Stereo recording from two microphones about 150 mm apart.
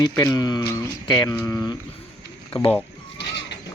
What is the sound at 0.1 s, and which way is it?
Speech, 15° left (ahead or behind).